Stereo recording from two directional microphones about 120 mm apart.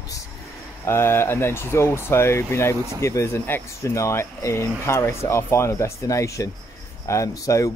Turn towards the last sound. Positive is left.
turn(degrees=25)  # may be behind; listen again after turning